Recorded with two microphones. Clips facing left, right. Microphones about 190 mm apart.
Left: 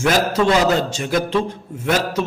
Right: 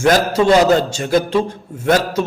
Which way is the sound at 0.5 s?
40° right (ahead or behind).